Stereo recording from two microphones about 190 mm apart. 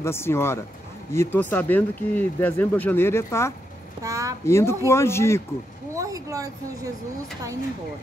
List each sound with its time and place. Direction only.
0.0 s speech: 15° left (ahead or behind)
4.0 s a sound: 15° right (ahead or behind)
4.5 s speech: 15° left (ahead or behind)
5.9 s speech: 15° right (ahead or behind)